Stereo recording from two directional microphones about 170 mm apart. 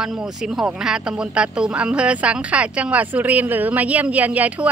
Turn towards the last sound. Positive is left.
turn(degrees=-10)  # may be behind; listen again after turning